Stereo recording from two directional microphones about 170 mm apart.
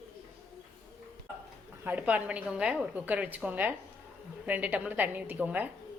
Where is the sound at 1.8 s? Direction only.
10° right (ahead or behind).